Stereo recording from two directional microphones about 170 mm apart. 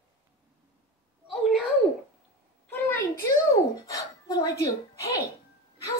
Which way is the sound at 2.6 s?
10° left (ahead or behind).